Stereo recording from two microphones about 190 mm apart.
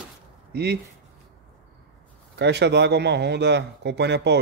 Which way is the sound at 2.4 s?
65° right (ahead or behind).